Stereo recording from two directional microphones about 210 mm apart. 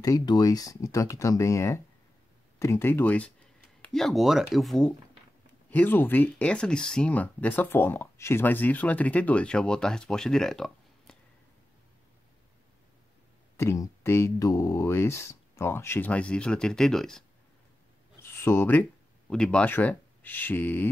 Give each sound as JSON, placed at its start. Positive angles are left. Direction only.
{"t": 0.0, "sound": "speech", "side_deg": 15}
{"t": 13.6, "sound": "speech", "side_deg": 10}
{"t": 18.2, "sound": "speech", "side_deg": 10}